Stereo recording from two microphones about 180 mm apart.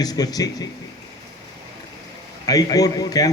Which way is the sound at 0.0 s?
20° left (ahead or behind).